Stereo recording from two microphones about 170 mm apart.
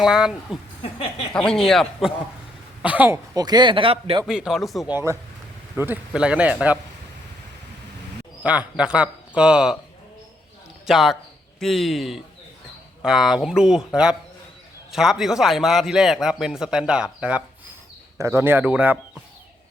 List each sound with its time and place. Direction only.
0.0 s a man's voice: 5° right (ahead or behind)
3.3 s speech: 25° right (ahead or behind)
4.3 s a man's voice: 5° right (ahead or behind)
5.7 s speech: 10° right (ahead or behind)
8.4 s a man's voice: 5° right (ahead or behind)
10.8 s a man's voice: centre (ahead or behind)